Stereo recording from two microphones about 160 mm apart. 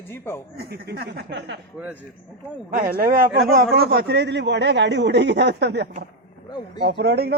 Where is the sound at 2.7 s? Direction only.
60° right (ahead or behind).